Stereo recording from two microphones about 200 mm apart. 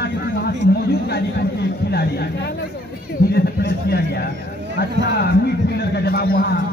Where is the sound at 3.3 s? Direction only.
55° left (ahead or behind).